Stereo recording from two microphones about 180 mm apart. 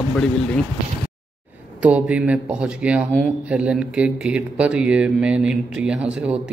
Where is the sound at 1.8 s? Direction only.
5° right (ahead or behind).